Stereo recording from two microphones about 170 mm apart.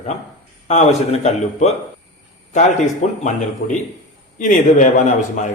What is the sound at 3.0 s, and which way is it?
Speech, 45° left (ahead or behind).